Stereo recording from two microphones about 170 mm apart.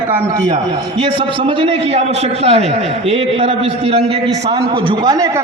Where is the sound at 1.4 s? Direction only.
35° right (ahead or behind).